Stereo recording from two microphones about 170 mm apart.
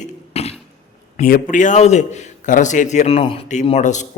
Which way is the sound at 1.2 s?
55° left (ahead or behind).